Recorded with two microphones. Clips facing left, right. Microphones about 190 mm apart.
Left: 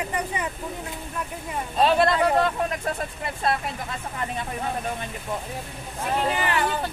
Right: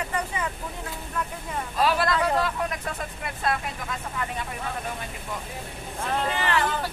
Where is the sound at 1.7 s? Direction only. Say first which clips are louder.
Left 4 dB; 25° left (ahead or behind).